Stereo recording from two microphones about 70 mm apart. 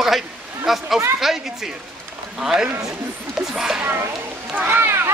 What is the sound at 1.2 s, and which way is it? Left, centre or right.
A man's voice, centre.